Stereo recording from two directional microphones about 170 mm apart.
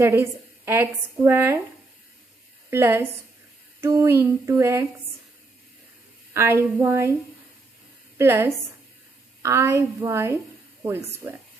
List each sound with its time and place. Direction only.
0.0 s a woman's voice: 15° right (ahead or behind)
2.7 s a woman's voice: 15° right (ahead or behind)
6.3 s a woman's voice: 15° right (ahead or behind)
8.2 s a woman's voice: 15° right (ahead or behind)